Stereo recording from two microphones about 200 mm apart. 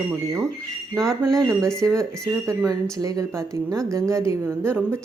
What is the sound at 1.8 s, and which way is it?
A woman's voice, 15° right (ahead or behind).